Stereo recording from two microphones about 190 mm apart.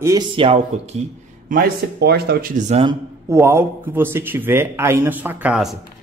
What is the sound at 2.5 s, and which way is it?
Speech, 35° right (ahead or behind).